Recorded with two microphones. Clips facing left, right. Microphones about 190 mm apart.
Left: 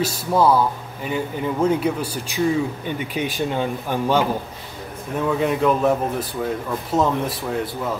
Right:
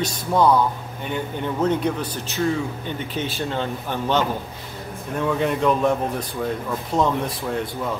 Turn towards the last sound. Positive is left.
turn(degrees=0)  # may be behind; listen again after turning